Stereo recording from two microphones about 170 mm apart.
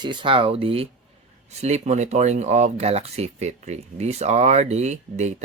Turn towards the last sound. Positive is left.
turn(degrees=-40)  # may be behind; listen again after turning